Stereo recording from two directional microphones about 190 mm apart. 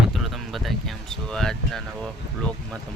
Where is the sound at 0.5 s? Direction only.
Centre (ahead or behind).